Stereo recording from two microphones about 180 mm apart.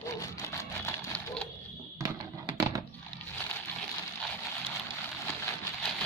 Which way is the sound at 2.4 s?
20° right (ahead or behind).